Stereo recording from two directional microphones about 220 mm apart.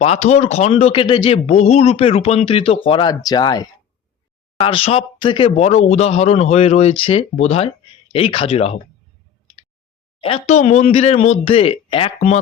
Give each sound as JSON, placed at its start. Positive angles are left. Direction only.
{"t": 0.0, "sound": "a man's voice", "side_deg": 30}
{"t": 10.2, "sound": "a man's voice", "side_deg": 30}